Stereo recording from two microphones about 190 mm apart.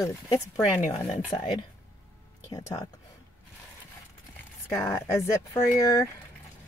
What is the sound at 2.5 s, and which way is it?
Speech, 20° left (ahead or behind).